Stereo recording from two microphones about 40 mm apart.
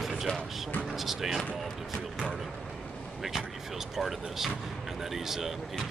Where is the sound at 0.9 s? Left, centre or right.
Centre.